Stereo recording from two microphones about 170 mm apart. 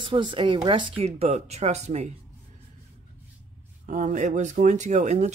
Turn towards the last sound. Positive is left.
turn(degrees=-45)  # may be behind; listen again after turning